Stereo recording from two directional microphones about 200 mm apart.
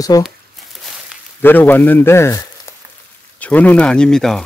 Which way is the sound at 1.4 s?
10° left (ahead or behind).